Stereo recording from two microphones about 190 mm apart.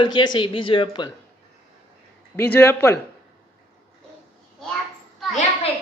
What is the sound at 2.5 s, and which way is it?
Speech, 15° left (ahead or behind).